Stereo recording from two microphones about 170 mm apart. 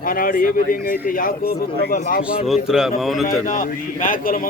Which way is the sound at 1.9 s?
50° left (ahead or behind).